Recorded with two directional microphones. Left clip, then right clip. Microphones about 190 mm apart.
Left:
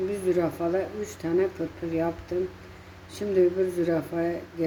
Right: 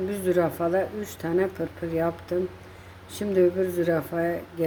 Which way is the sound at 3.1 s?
35° right (ahead or behind).